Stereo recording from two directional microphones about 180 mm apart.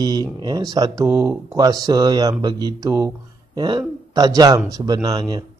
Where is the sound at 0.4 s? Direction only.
20° right (ahead or behind).